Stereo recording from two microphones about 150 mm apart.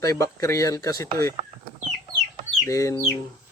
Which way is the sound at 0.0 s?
25° left (ahead or behind).